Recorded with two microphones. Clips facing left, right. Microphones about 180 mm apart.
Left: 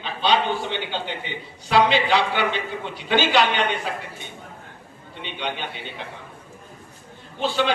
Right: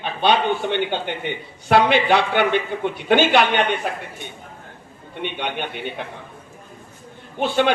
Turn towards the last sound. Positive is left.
turn(degrees=-55)  # may be behind; listen again after turning